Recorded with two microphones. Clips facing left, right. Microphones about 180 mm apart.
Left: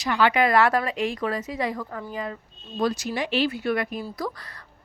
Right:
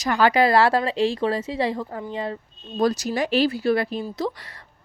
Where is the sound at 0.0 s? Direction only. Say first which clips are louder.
Right 3 dB; 40° right (ahead or behind).